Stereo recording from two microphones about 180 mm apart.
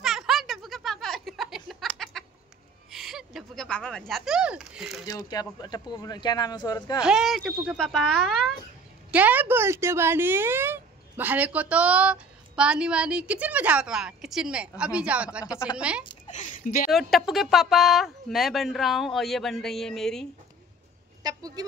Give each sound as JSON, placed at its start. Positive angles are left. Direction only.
{"t": 0.0, "sound": "snicker", "side_deg": 0}
{"t": 2.9, "sound": "speech", "side_deg": 0}
{"t": 5.0, "sound": "speech", "side_deg": 20}
{"t": 7.0, "sound": "speech", "side_deg": -5}
{"t": 9.1, "sound": "speech", "side_deg": -10}
{"t": 16.3, "sound": "a sound", "side_deg": 45}
{"t": 16.9, "sound": "speech", "side_deg": 0}
{"t": 21.2, "sound": "a sound", "side_deg": -20}